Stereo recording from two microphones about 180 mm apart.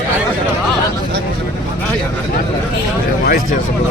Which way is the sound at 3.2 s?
60° left (ahead or behind).